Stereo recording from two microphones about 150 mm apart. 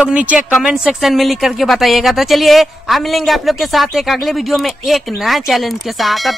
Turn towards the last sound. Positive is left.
turn(degrees=0)  # may be behind; listen again after turning